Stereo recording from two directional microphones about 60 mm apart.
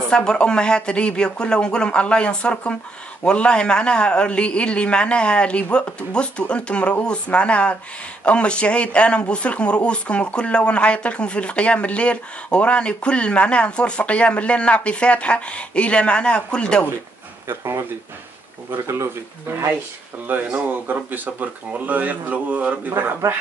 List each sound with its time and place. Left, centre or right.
0.1 s speech: centre
17.5 s speech: right
18.9 s speech: right
20.2 s speech: right